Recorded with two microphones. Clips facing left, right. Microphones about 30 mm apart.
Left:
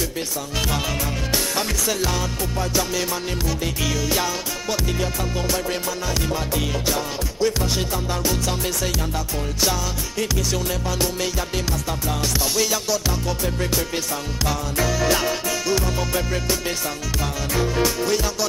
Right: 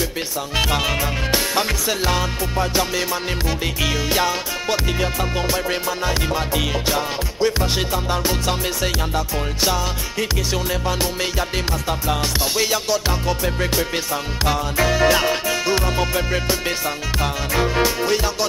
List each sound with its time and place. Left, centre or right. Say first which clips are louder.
0.6 s music: right 5 dB; right